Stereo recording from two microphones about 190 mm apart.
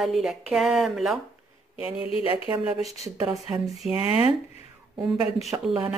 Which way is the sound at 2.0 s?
30° left (ahead or behind).